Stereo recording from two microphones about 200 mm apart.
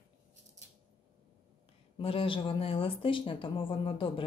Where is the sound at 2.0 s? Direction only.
25° left (ahead or behind).